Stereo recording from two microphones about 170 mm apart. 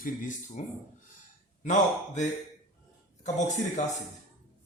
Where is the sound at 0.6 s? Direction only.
45° left (ahead or behind).